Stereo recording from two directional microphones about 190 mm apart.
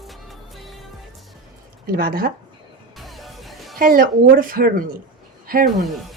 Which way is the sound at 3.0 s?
Centre (ahead or behind).